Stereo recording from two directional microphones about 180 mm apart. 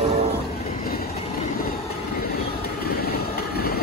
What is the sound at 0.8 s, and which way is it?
Train, 55° left (ahead or behind).